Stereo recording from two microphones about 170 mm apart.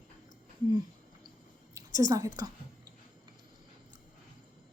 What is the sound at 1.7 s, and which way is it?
Speech, 20° right (ahead or behind).